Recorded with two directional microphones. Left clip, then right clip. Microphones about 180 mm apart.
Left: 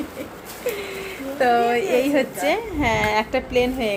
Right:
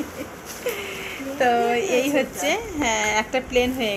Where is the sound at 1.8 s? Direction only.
25° left (ahead or behind).